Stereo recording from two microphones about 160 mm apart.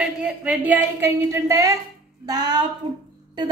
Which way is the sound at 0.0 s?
5° right (ahead or behind).